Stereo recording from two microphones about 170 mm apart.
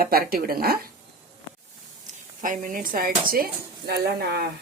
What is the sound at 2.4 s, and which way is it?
Speech, 50° right (ahead or behind).